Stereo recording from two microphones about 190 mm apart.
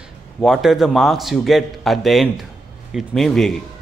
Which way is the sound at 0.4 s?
Centre (ahead or behind).